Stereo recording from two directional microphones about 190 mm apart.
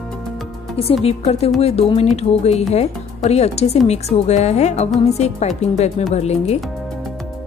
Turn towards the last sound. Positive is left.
turn(degrees=35)  # may be behind; listen again after turning